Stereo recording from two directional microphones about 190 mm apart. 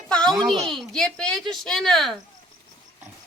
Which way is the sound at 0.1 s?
5° left (ahead or behind).